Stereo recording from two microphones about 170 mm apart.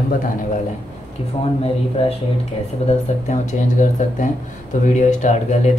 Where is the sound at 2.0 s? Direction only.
35° left (ahead or behind).